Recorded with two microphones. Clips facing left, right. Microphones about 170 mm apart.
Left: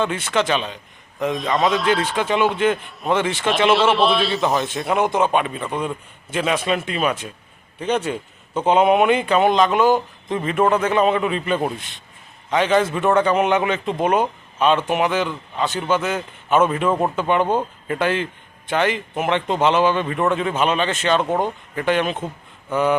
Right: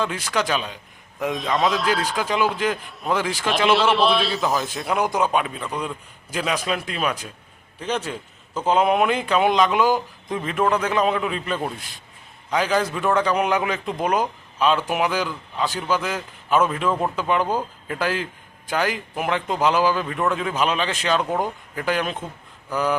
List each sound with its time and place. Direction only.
0.3 s a man's voice: centre (ahead or behind)
17.4 s speech: 25° left (ahead or behind)
17.8 s a man's voice: centre (ahead or behind)